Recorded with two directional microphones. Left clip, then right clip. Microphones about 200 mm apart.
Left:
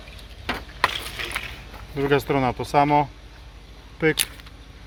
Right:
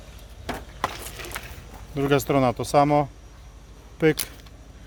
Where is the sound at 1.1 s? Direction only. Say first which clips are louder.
Left 6 dB; 15° right (ahead or behind).